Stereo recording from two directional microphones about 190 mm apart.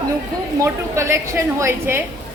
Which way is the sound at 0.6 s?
15° right (ahead or behind).